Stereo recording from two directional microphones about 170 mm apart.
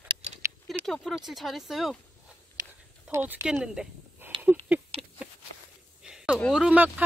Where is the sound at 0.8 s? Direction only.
Centre (ahead or behind).